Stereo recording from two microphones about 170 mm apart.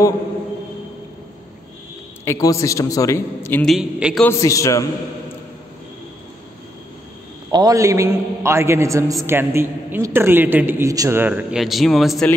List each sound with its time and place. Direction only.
2.2 s a man's voice: 20° left (ahead or behind)
3.6 s a man's voice: centre (ahead or behind)
4.3 s a man's voice: 20° left (ahead or behind)
7.5 s a man's voice: 20° right (ahead or behind); by 12.3 s centre (ahead or behind)